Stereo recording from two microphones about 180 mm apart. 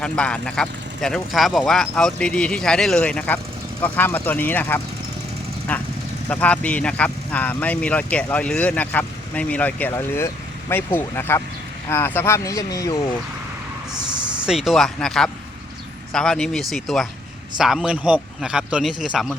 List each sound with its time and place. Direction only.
0.0 s speech: 5° left (ahead or behind)
14.4 s speech: centre (ahead or behind)